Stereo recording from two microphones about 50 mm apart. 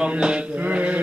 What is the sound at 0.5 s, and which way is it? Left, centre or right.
Speech, right.